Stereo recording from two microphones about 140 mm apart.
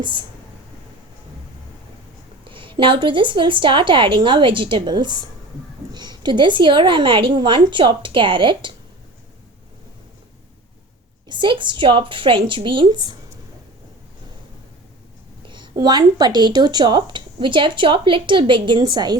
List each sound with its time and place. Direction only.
0.0 s speech: 35° right (ahead or behind)
2.5 s speech: 35° right (ahead or behind)
11.3 s speech: 35° right (ahead or behind)
15.4 s a sound: 35° right (ahead or behind)
15.7 s speech: 30° right (ahead or behind)